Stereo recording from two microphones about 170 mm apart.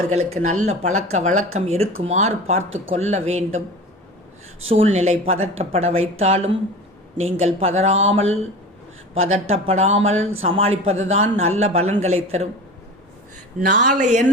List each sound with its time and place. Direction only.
0.1 s speech: 40° right (ahead or behind)
4.7 s speech: 40° right (ahead or behind)
9.3 s speech: 40° right (ahead or behind)
13.8 s speech: 45° right (ahead or behind)